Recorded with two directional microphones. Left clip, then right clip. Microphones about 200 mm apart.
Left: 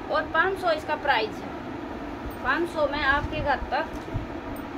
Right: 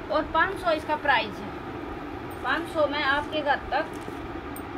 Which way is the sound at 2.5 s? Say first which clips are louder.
Even; 45° left (ahead or behind).